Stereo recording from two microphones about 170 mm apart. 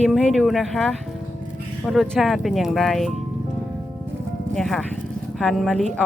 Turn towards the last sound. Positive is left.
turn(degrees=0)  # may be behind; listen again after turning